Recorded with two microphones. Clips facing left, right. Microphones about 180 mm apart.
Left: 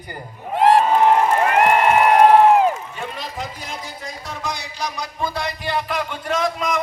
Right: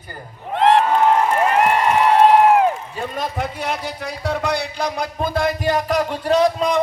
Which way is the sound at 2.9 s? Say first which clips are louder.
Right 5 dB; 50° right (ahead or behind).